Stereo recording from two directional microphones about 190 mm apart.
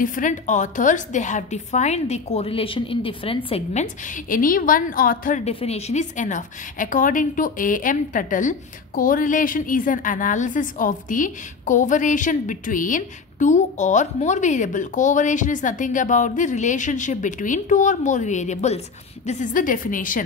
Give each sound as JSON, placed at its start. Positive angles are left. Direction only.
{"t": 0.0, "sound": "a woman's voice", "side_deg": 45}